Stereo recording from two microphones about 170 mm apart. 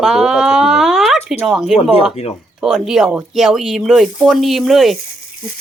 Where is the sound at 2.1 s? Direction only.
40° left (ahead or behind).